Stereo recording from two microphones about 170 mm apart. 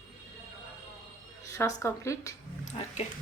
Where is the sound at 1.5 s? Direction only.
15° left (ahead or behind).